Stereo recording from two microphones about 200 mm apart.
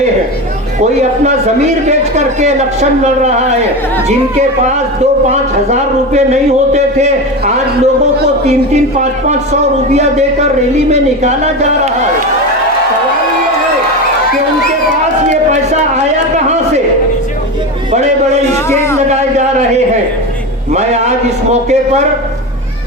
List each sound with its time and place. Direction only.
0.8 s a man's voice: 35° right (ahead or behind)
5.3 s a man's voice: 35° right (ahead or behind)
9.2 s a man's voice: 35° right (ahead or behind)
17.9 s a man's voice: 35° right (ahead or behind)
18.5 s a man's voice: 15° left (ahead or behind)
19.0 s a man's voice: 35° right (ahead or behind)
20.7 s a man's voice: 35° right (ahead or behind)